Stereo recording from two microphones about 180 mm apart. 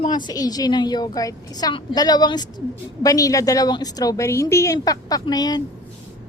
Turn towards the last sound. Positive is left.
turn(degrees=20)  # may be behind; listen again after turning